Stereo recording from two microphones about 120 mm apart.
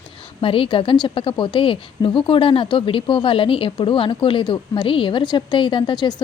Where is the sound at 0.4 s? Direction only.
50° left (ahead or behind).